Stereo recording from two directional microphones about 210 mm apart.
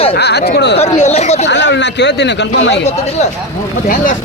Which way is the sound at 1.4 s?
55° left (ahead or behind).